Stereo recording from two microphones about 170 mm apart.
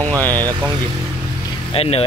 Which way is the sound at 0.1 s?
10° left (ahead or behind).